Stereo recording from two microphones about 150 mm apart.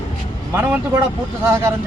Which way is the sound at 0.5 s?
15° right (ahead or behind).